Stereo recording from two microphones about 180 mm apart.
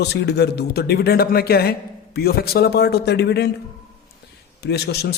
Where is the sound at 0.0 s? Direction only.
65° left (ahead or behind).